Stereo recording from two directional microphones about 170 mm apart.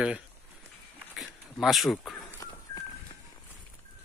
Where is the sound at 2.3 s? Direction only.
20° left (ahead or behind).